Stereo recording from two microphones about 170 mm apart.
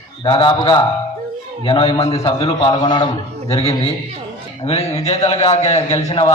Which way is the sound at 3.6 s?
35° left (ahead or behind).